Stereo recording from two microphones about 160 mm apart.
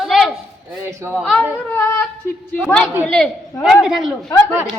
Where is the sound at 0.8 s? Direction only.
15° right (ahead or behind).